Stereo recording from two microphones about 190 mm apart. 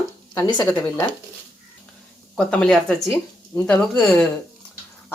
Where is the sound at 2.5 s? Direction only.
5° left (ahead or behind).